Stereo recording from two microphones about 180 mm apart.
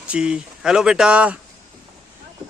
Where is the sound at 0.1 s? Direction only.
5° right (ahead or behind).